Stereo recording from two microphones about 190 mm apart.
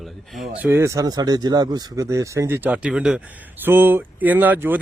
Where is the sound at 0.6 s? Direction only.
10° right (ahead or behind).